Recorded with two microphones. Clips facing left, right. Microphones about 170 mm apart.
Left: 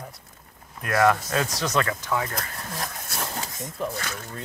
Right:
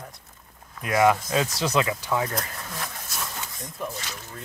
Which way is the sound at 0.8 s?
5° right (ahead or behind).